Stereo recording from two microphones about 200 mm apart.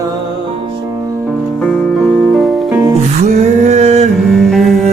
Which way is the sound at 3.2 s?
35° right (ahead or behind).